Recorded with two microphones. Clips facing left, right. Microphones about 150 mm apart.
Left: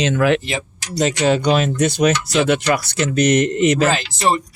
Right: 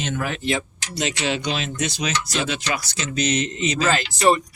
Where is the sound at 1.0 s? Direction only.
45° left (ahead or behind); by 3.9 s 60° left (ahead or behind).